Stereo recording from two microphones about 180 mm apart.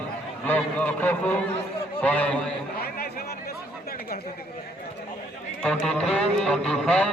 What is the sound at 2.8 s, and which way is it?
Chatter, 60° left (ahead or behind).